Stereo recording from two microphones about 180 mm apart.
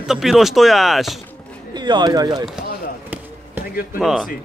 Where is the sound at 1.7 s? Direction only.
25° right (ahead or behind).